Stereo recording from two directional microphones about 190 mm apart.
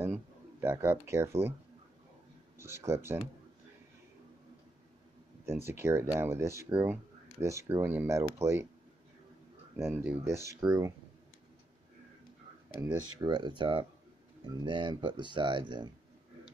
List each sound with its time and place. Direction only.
0.0 s a sound: 10° right (ahead or behind)
2.6 s speech: 15° right (ahead or behind)
5.4 s speech: 15° right (ahead or behind)
9.8 s speech: 15° right (ahead or behind)
12.8 s speech: 15° right (ahead or behind)